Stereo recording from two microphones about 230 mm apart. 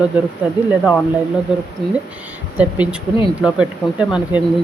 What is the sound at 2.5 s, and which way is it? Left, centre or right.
Speech, centre.